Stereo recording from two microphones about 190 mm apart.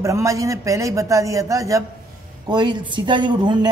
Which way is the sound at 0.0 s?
15° right (ahead or behind).